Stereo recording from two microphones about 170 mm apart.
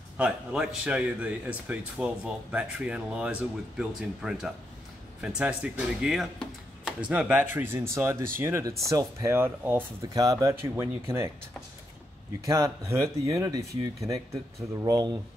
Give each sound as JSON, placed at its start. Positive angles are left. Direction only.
{"t": 0.2, "sound": "speech", "side_deg": -5}
{"t": 12.4, "sound": "speech", "side_deg": -20}